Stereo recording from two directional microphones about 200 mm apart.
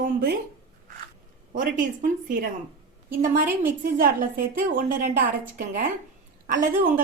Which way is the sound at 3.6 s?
45° right (ahead or behind).